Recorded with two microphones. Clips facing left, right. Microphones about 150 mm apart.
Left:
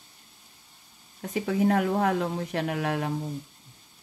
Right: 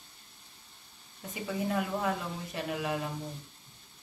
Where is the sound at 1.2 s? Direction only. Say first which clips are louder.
Left 9 dB; 80° left.